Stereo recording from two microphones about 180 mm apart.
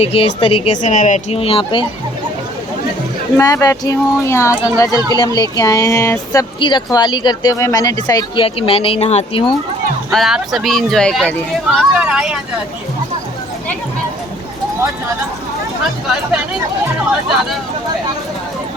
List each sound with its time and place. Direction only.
0.0 s speech: 30° left (ahead or behind)
0.8 s speech: 45° left (ahead or behind)
3.3 s speech: 20° left (ahead or behind)
8.4 s speech: 30° left (ahead or behind)
10.1 s speech: centre (ahead or behind)